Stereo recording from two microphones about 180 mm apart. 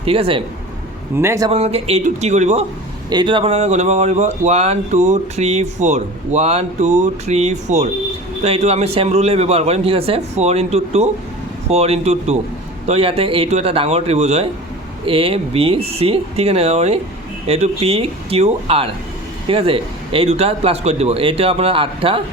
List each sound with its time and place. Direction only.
0.0 s speech: 30° right (ahead or behind)
1.1 s a man's voice: 15° right (ahead or behind)
1.5 s speech: 35° right (ahead or behind)
3.1 s speech: 25° right (ahead or behind)